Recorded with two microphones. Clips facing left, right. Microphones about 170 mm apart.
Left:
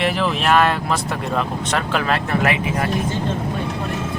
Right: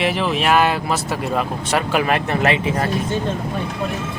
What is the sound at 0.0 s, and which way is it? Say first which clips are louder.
Speech: right 1 dB; centre (ahead or behind).